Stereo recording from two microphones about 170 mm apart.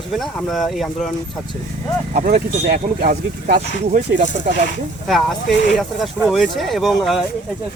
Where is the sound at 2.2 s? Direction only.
60° right (ahead or behind).